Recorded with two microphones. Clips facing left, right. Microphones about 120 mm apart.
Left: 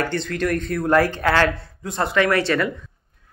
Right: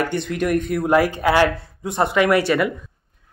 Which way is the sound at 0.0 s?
15° right (ahead or behind).